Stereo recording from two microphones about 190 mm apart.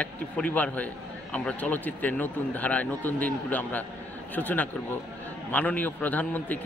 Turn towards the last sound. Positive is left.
turn(degrees=10)  # may be behind; listen again after turning